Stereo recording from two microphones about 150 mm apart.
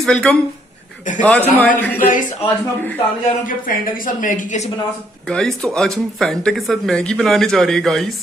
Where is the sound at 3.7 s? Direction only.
65° left (ahead or behind).